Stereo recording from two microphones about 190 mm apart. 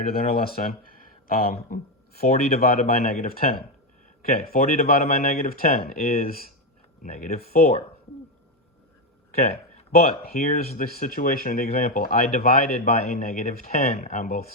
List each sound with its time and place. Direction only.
0.0 s speech: 50° left (ahead or behind)
9.4 s a sound: 35° left (ahead or behind)
10.5 s speech: 50° left (ahead or behind)